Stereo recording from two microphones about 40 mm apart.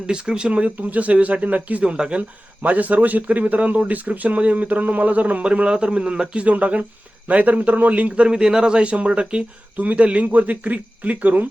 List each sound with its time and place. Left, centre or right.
0.1 s speech: right
0.8 s a man's voice: right
1.8 s speech: right
2.6 s a man's voice: right
8.3 s speech: centre
9.7 s a man's voice: right